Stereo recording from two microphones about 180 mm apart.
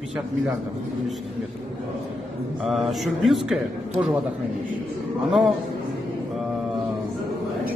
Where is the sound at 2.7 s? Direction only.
Centre (ahead or behind).